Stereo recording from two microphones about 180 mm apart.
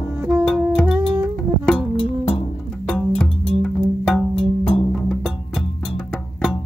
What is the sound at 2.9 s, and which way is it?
Music, 5° left (ahead or behind).